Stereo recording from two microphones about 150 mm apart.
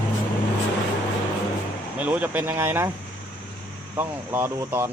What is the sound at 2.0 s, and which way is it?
Speech, 10° right (ahead or behind).